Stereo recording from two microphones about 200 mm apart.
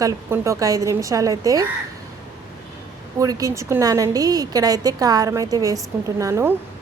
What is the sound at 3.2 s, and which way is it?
A woman's voice, 15° right (ahead or behind).